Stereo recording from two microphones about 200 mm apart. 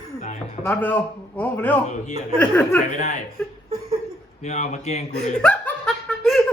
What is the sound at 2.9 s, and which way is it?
Speech, 35° left (ahead or behind).